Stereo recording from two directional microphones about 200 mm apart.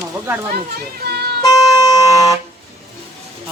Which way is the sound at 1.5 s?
20° left (ahead or behind).